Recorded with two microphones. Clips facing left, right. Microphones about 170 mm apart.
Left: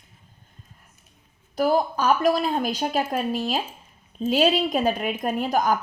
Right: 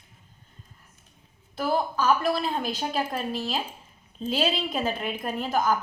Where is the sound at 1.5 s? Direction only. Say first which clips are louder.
Left 5 dB; 40° left (ahead or behind).